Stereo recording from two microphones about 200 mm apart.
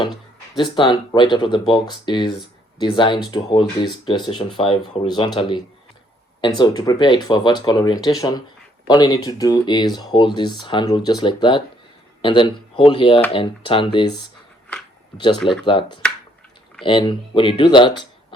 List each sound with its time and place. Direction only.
0.5 s speech: 25° left (ahead or behind)
15.6 s speech: 25° left (ahead or behind)